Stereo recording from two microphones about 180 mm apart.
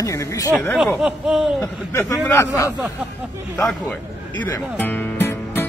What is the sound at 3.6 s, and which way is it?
Music, 5° left (ahead or behind).